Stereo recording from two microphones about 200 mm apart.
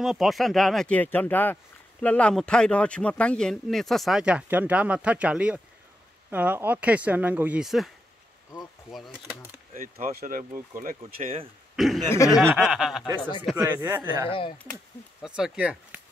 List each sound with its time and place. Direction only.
0.0 s speech: centre (ahead or behind)
9.8 s speech: 45° right (ahead or behind)
11.7 s a sound: centre (ahead or behind)
12.1 s speech: 15° left (ahead or behind)
12.5 s speech: centre (ahead or behind)
13.6 s speech: 10° right (ahead or behind)
15.2 s speech: 5° right (ahead or behind)